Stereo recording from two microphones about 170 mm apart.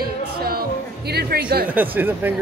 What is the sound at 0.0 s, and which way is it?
Music, 65° right (ahead or behind).